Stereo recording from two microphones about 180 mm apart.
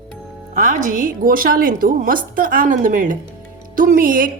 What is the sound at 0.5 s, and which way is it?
A woman's voice, 45° right (ahead or behind).